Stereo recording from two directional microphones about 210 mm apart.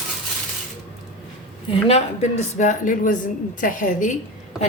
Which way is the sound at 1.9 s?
30° left (ahead or behind).